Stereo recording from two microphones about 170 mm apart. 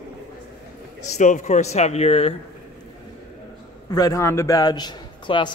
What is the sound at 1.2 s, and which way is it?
Speech, 45° left (ahead or behind).